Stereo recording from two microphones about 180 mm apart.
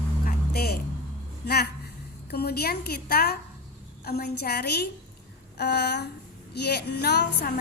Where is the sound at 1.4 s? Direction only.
60° left (ahead or behind).